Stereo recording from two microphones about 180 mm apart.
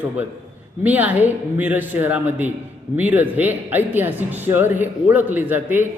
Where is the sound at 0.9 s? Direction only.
10° right (ahead or behind).